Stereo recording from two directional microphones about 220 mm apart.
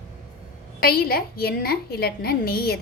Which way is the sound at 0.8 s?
45° left (ahead or behind).